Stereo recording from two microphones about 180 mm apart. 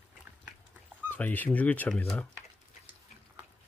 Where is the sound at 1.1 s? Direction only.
10° left (ahead or behind).